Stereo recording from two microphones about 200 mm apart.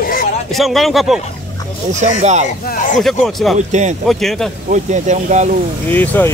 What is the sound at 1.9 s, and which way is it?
Speech, 35° right (ahead or behind).